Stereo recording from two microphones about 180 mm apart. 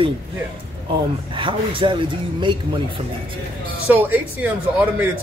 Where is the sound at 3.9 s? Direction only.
10° right (ahead or behind).